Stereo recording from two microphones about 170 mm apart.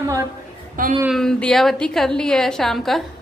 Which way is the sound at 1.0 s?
Centre (ahead or behind).